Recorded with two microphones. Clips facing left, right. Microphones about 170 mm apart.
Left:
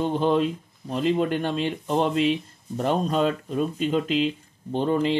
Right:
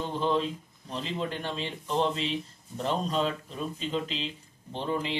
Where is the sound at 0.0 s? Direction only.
60° left (ahead or behind).